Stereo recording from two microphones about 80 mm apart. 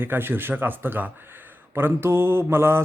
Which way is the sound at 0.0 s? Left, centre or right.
Right.